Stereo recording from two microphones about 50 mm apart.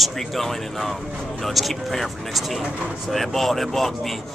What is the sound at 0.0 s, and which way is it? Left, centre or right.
A man's voice, centre.